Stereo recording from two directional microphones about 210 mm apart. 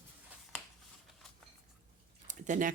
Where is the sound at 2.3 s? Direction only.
35° right (ahead or behind).